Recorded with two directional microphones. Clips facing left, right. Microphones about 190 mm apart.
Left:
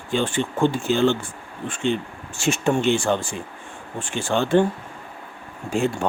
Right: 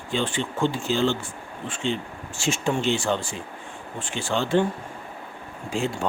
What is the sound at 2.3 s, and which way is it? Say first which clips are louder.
Speech: left 4 dB; 60° left (ahead or behind).